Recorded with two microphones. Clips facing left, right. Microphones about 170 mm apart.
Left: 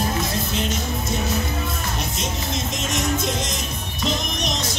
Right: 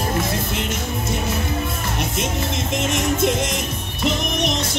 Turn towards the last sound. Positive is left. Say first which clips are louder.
# right 4 dB
turn(degrees=-60)  # may be behind; listen again after turning